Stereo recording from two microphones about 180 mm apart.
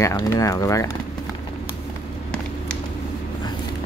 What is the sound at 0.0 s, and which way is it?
Speech, 15° left (ahead or behind).